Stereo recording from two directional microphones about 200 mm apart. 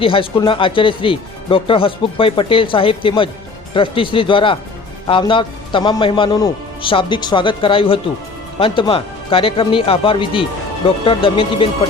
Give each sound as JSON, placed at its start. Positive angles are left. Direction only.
{"t": 0.0, "sound": "speech", "side_deg": 25}